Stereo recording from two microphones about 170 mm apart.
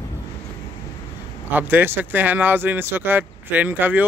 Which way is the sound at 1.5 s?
10° right (ahead or behind).